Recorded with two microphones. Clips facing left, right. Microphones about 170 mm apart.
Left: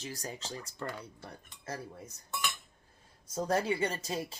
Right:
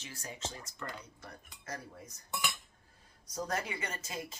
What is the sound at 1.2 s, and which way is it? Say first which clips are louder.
Cutlery: left 4 dB; 30° left (ahead or behind).